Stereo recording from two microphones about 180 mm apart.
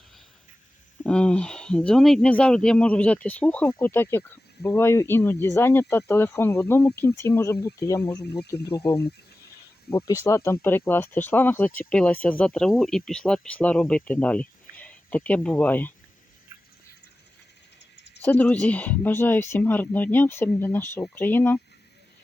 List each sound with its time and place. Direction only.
1.0 s speech: 5° left (ahead or behind)
8.4 s speech: 65° left (ahead or behind)
9.9 s speech: 60° left (ahead or behind)
10.2 s speech: 15° left (ahead or behind)
17.9 s a sound: 70° left (ahead or behind)
18.2 s speech: 10° left (ahead or behind)